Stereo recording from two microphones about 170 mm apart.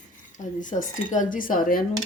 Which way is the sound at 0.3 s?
50° left (ahead or behind).